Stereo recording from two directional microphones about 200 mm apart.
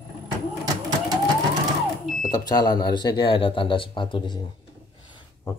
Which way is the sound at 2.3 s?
20° left (ahead or behind).